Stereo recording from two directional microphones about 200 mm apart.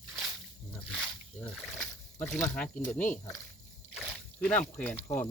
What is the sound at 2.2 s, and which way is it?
Speech, 10° left (ahead or behind).